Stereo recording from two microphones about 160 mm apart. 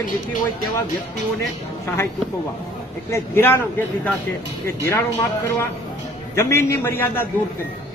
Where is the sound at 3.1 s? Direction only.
15° left (ahead or behind).